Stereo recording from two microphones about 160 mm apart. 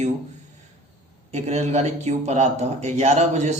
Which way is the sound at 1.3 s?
45° right (ahead or behind).